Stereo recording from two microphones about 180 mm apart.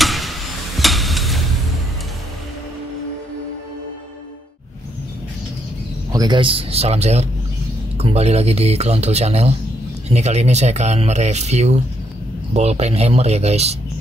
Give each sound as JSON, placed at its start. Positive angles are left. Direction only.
{"t": 0.0, "sound": "hammer", "side_deg": 0}
{"t": 6.1, "sound": "speech", "side_deg": -25}